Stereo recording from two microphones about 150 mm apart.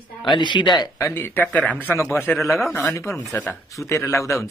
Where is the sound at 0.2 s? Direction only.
30° left (ahead or behind); by 2.2 s 15° left (ahead or behind).